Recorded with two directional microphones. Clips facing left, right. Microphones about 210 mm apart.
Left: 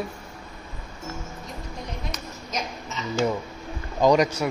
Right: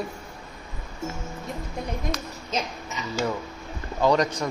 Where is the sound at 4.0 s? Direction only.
10° left (ahead or behind).